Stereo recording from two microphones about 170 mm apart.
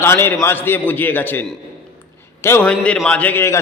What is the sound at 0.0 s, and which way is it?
A man's voice, 15° left (ahead or behind).